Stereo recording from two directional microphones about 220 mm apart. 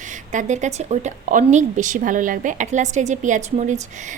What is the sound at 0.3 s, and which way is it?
A woman's voice, 35° right (ahead or behind).